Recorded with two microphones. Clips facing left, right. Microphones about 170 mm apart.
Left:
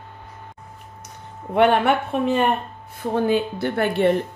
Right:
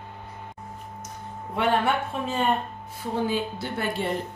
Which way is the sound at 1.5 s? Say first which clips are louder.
Left 7 dB; 65° left (ahead or behind).